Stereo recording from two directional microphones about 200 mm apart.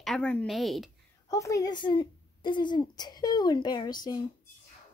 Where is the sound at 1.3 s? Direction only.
15° left (ahead or behind).